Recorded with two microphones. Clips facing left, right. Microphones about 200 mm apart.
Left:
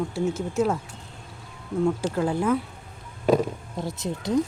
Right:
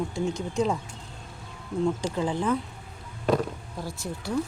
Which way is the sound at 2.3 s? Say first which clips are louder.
Left 3 dB; 10° left (ahead or behind).